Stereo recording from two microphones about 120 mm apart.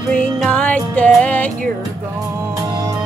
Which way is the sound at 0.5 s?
10° left (ahead or behind).